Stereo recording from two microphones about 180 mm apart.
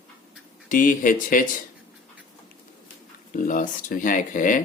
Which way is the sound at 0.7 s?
50° left (ahead or behind).